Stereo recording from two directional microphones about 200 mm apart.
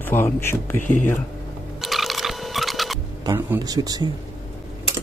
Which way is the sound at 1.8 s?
Centre (ahead or behind).